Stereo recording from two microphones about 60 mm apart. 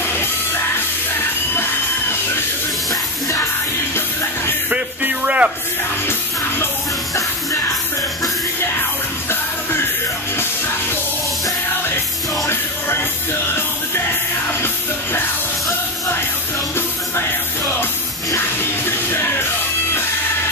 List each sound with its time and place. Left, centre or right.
4.6 s music: right
9.3 s music: left
12.4 s music: left
18.3 s music: left